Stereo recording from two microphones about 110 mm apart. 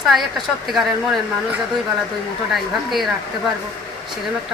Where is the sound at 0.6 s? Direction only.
Centre (ahead or behind).